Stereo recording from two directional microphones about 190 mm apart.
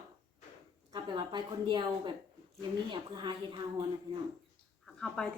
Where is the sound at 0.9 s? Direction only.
25° right (ahead or behind).